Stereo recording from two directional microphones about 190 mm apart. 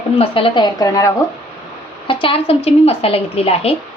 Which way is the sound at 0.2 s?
30° left (ahead or behind).